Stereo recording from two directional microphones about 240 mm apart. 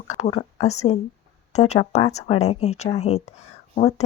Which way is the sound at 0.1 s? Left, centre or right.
Left.